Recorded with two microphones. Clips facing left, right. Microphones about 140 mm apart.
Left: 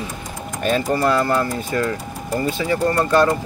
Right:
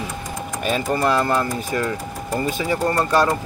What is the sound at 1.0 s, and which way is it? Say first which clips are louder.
Speech: left 1 dB; 20° right (ahead or behind).